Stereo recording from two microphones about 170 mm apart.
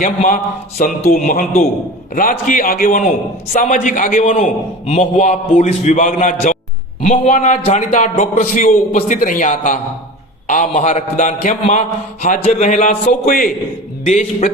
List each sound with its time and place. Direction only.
0.0 s a man's voice: 45° left (ahead or behind)
14.0 s a man's voice: 45° left (ahead or behind)